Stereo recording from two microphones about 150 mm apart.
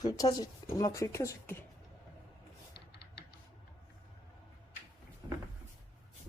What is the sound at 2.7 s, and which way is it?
Typing, 90° left.